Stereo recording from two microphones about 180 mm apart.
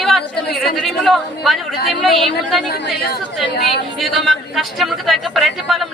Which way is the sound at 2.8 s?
65° left (ahead or behind).